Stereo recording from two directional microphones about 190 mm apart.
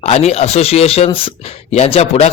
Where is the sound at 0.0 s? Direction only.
35° left (ahead or behind).